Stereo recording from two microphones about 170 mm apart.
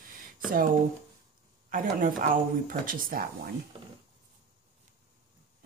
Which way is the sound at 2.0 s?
55° right (ahead or behind).